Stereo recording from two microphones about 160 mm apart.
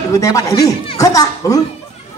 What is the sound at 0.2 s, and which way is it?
A man's voice, 20° left (ahead or behind).